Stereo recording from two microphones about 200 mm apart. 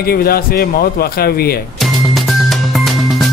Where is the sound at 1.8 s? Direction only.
Centre (ahead or behind).